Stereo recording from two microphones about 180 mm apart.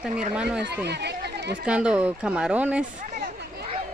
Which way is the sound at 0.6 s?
70° right (ahead or behind).